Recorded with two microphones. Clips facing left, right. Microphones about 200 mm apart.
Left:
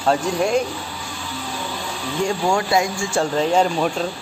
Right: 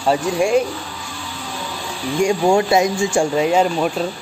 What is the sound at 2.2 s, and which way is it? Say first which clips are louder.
Speech: right 5 dB; 20° right (ahead or behind).